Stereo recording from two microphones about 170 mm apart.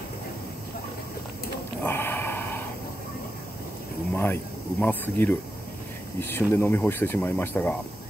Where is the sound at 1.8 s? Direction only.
15° left (ahead or behind).